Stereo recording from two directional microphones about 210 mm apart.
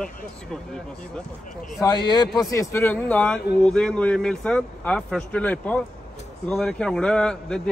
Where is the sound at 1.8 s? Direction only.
20° left (ahead or behind).